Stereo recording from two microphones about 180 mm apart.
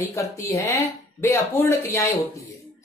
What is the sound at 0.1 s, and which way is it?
Speech, 15° left (ahead or behind).